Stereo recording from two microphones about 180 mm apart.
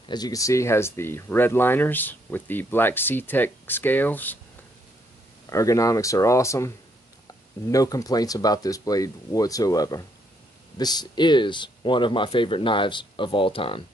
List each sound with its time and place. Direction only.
0.1 s speech: 20° left (ahead or behind)
5.5 s speech: 15° left (ahead or behind)
7.7 s speech: 20° left (ahead or behind)